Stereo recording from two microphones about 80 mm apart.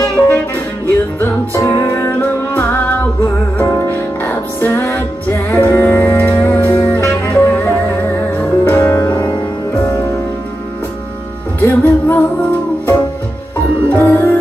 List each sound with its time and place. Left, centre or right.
0.8 s music: left
11.6 s music: left
13.9 s music: left